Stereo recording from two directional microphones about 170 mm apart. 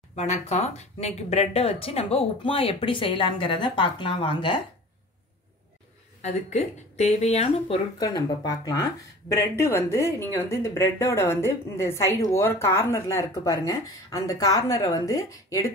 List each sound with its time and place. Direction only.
0.1 s speech: 45° left (ahead or behind)
6.2 s speech: 40° left (ahead or behind)
8.0 s a woman's voice: 25° left (ahead or behind)